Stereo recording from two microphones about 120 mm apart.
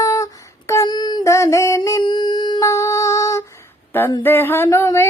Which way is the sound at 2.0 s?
35° left (ahead or behind).